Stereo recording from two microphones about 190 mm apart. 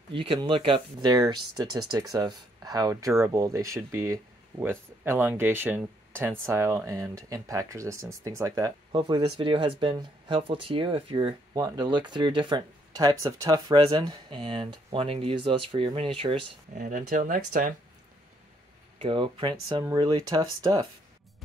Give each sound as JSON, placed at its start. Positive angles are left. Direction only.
{"t": 0.1, "sound": "speech", "side_deg": -30}
{"t": 16.7, "sound": "speech", "side_deg": -45}
{"t": 18.9, "sound": "speech", "side_deg": -30}